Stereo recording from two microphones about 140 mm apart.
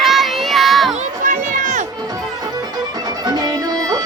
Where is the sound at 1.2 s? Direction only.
70° right (ahead or behind).